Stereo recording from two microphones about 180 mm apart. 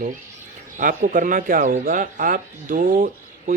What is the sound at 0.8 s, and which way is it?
A man's voice, 45° right (ahead or behind).